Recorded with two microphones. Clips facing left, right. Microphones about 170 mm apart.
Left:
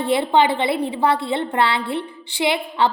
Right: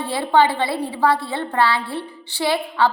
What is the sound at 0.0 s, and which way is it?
A woman's voice, 20° left (ahead or behind).